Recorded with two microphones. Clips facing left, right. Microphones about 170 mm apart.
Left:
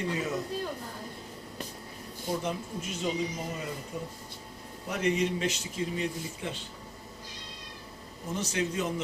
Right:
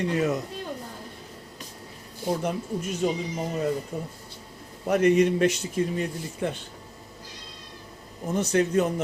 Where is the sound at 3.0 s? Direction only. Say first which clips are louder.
Right 6 dB; 50° right (ahead or behind).